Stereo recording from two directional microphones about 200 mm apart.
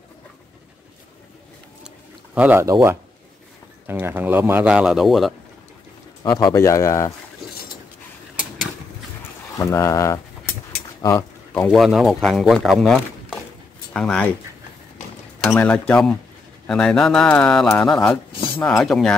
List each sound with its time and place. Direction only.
2.3 s speech: 10° right (ahead or behind)
6.2 s speech: 20° left (ahead or behind)
9.6 s speech: 15° left (ahead or behind)
11.0 s a sound: 15° left (ahead or behind)
11.7 s speech: centre (ahead or behind)
15.4 s speech: 5° left (ahead or behind)